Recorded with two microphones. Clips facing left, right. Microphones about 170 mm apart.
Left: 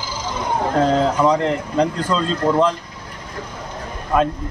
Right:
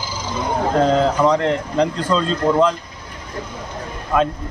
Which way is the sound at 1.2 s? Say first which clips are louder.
Right 1 dB; 5° left (ahead or behind).